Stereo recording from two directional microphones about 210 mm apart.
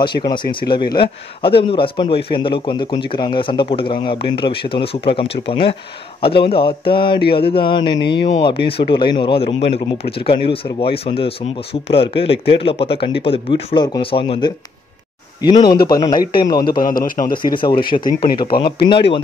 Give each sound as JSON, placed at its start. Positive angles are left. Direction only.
{"t": 0.0, "sound": "speech", "side_deg": 20}
{"t": 16.0, "sound": "speech", "side_deg": 20}
{"t": 16.7, "sound": "a man's voice", "side_deg": 40}
{"t": 17.4, "sound": "speech", "side_deg": 20}